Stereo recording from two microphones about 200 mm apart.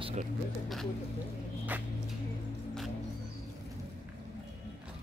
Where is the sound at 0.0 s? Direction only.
35° right (ahead or behind).